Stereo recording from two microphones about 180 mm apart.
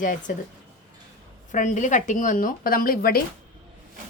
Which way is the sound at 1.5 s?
45° left (ahead or behind).